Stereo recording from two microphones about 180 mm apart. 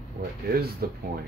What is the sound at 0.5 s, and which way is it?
Speech, 60° right (ahead or behind).